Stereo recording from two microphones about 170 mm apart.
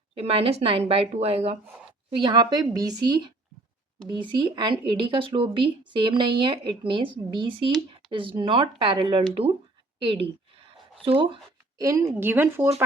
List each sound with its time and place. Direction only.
0.1 s a woman's voice: 35° right (ahead or behind)
11.8 s speech: 20° right (ahead or behind)